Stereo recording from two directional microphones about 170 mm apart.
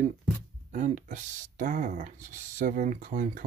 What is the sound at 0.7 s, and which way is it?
Speech, 50° right (ahead or behind).